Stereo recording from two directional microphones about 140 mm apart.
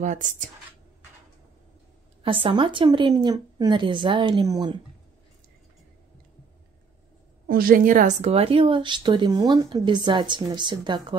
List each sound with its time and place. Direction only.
0.0 s speech: 60° right (ahead or behind)
2.2 s speech: 40° right (ahead or behind)
7.4 s a woman's voice: 90° right; by 8.3 s 70° right (ahead or behind)
8.3 s speech: 40° right (ahead or behind)